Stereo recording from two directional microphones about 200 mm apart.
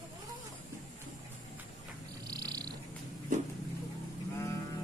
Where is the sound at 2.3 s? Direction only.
20° right (ahead or behind).